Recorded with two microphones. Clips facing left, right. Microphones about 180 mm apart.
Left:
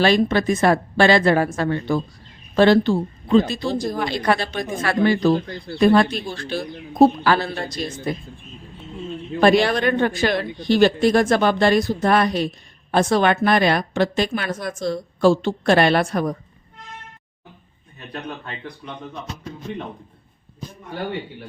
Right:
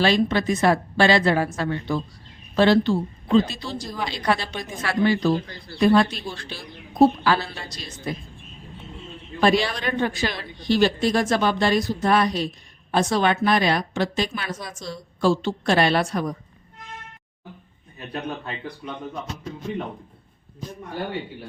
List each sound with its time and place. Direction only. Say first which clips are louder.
0.0 s speech: left 3 dB; 50° left (ahead or behind)
9.4 s a woman's voice: left 5 dB; 55° left (ahead or behind)